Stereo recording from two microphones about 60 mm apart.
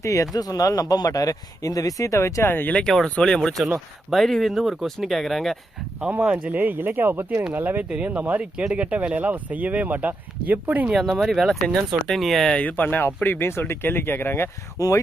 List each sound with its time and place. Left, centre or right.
0.0 s speech: left
0.3 s speech: left
2.5 s speech: left
2.8 s speech: centre
6.1 s speech: right
6.6 s speech: right
10.9 s speech: centre
12.5 s speech: left
14.8 s speech: left